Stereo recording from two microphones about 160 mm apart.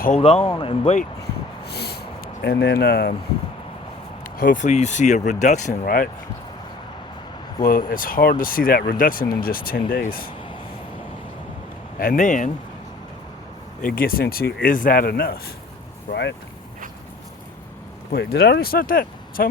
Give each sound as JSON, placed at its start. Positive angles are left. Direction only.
{"t": 0.2, "sound": "speech", "side_deg": 35}
{"t": 1.6, "sound": "a sound", "side_deg": 90}
{"t": 4.4, "sound": "speech", "side_deg": 55}
{"t": 7.6, "sound": "speech", "side_deg": 60}
{"t": 11.9, "sound": "speech", "side_deg": 60}
{"t": 13.8, "sound": "speech", "side_deg": 65}
{"t": 18.1, "sound": "speech", "side_deg": 85}